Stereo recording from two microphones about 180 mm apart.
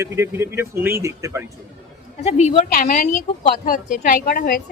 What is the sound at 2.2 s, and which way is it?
A woman's voice, 40° left (ahead or behind).